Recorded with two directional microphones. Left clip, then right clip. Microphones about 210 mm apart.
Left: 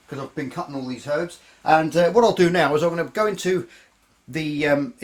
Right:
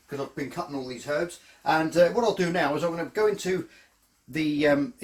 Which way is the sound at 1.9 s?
55° left (ahead or behind).